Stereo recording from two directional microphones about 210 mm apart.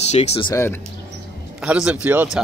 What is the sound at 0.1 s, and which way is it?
Speech, 30° left (ahead or behind).